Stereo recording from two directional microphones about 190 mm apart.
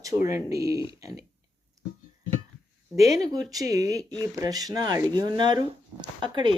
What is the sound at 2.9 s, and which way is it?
Speech, 20° right (ahead or behind).